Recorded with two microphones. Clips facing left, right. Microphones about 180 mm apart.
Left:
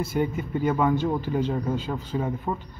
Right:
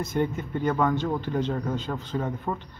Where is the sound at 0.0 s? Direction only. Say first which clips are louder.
Left 1 dB; 10° left (ahead or behind).